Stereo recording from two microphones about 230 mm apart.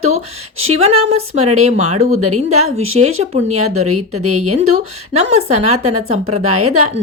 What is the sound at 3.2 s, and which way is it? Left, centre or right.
Speech, right.